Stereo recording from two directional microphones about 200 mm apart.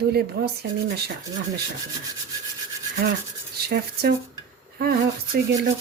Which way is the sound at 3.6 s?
50° right (ahead or behind).